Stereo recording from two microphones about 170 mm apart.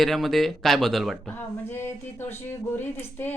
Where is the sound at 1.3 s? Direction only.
15° left (ahead or behind).